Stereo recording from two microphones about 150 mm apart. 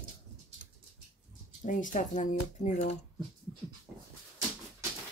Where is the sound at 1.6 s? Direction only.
60° left (ahead or behind).